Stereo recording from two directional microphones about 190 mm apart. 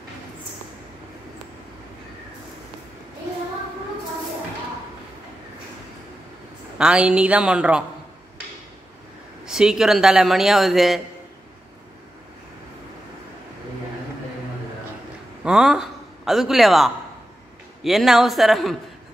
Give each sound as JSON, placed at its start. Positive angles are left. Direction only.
{"t": 6.8, "sound": "speech", "side_deg": -5}
{"t": 9.5, "sound": "speech", "side_deg": -5}
{"t": 15.4, "sound": "a man's voice", "side_deg": -5}